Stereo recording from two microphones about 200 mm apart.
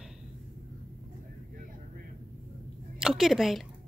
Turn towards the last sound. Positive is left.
turn(degrees=0)  # may be behind; listen again after turning